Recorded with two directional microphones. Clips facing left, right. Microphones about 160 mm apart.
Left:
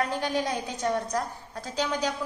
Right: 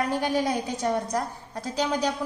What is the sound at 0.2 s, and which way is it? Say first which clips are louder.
A woman's voice: right 3 dB; 10° right (ahead or behind).